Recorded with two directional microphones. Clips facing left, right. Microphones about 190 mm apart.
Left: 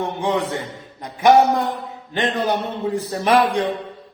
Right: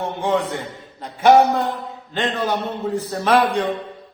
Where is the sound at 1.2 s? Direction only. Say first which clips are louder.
Even; 15° left (ahead or behind).